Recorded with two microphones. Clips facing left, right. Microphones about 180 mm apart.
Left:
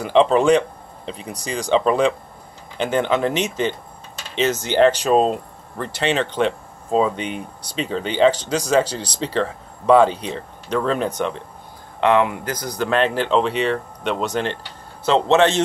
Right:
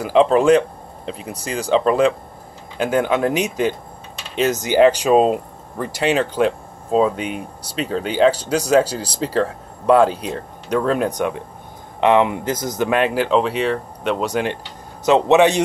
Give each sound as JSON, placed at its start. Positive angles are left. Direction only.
{"t": 0.0, "sound": "speech", "side_deg": -5}